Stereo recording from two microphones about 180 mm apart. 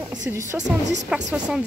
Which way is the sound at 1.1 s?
5° right (ahead or behind).